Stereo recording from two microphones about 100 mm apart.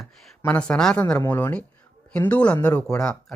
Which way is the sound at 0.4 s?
10° left (ahead or behind).